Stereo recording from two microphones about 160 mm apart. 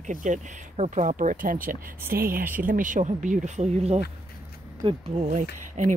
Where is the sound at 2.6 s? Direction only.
55° right (ahead or behind).